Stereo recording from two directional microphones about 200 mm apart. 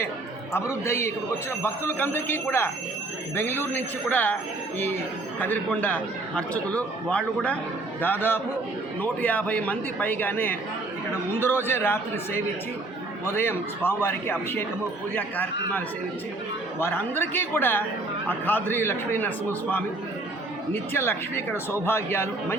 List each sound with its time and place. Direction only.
0.5 s speech: 15° left (ahead or behind)
5.4 s speech: 10° left (ahead or behind)
16.8 s speech: 10° left (ahead or behind)
20.7 s speech: 10° left (ahead or behind)